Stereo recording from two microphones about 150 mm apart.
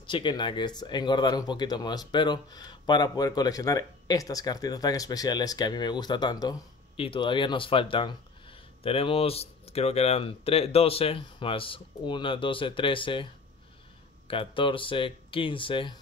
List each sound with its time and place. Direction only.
0.0 s speech: 30° left (ahead or behind)